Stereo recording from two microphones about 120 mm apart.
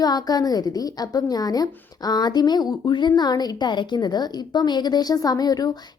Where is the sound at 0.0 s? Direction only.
35° left (ahead or behind).